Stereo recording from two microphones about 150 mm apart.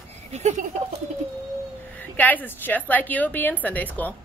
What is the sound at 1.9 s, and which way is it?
Speech, 10° left (ahead or behind).